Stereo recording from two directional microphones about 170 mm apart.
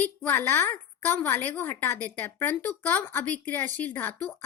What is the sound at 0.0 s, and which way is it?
A woman's voice, 10° left (ahead or behind).